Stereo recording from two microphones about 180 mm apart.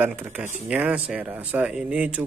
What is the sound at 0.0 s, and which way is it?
Cutlery, 10° right (ahead or behind).